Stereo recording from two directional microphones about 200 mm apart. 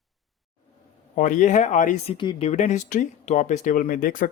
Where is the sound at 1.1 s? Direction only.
40° left (ahead or behind).